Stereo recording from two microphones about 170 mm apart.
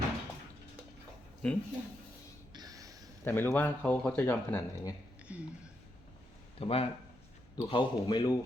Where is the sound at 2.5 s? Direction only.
20° right (ahead or behind).